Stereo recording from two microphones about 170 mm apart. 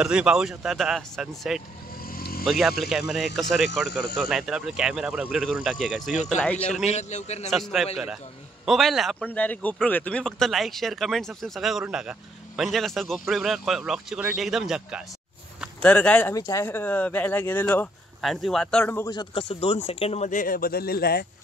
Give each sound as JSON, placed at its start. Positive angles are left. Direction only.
{"t": 0.0, "sound": "a man's voice", "side_deg": -5}
{"t": 2.0, "sound": "vehicle", "side_deg": 60}
{"t": 2.4, "sound": "a man's voice", "side_deg": 0}
{"t": 6.8, "sound": "a man's voice", "side_deg": 40}
{"t": 7.5, "sound": "a man's voice", "side_deg": 0}
{"t": 15.8, "sound": "a man's voice", "side_deg": 10}
{"t": 19.0, "sound": "speech", "side_deg": 30}